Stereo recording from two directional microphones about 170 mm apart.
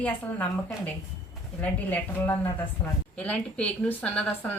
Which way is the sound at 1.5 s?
10° left (ahead or behind).